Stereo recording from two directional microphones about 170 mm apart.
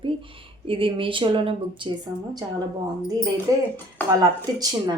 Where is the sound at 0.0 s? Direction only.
30° right (ahead or behind).